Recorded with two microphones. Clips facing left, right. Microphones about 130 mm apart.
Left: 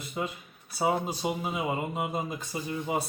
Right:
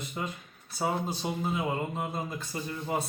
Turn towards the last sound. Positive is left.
turn(degrees=10)  # may be behind; listen again after turning